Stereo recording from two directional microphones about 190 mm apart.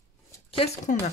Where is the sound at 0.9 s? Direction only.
40° left (ahead or behind).